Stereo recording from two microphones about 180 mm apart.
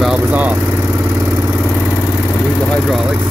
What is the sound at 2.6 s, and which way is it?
Speech, centre (ahead or behind).